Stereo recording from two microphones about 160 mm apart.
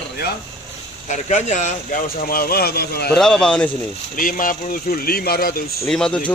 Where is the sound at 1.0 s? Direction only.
45° left (ahead or behind); by 3.1 s 85° left.